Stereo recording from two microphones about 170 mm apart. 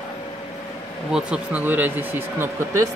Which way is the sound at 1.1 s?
5° right (ahead or behind).